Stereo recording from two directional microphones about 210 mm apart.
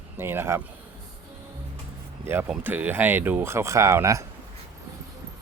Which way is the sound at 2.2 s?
10° right (ahead or behind).